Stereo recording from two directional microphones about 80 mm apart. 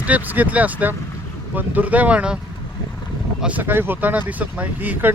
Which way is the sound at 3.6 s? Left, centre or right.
Right.